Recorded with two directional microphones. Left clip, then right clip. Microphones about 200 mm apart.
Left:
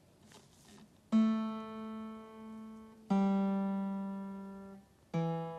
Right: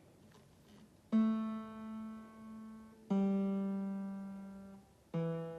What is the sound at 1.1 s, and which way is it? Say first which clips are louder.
Music: left 3 dB; 50° left (ahead or behind).